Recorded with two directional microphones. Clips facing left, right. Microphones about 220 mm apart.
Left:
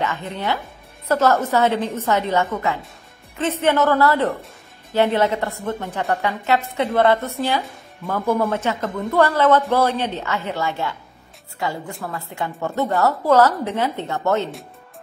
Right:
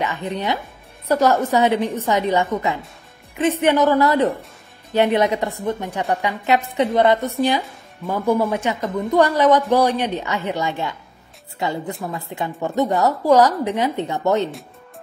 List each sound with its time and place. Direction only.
0.0 s a woman's voice: 15° right (ahead or behind)